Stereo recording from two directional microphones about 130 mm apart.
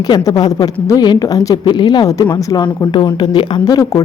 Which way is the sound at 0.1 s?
30° left (ahead or behind).